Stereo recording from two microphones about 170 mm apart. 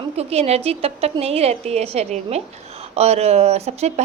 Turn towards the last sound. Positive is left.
turn(degrees=-40)  # may be behind; listen again after turning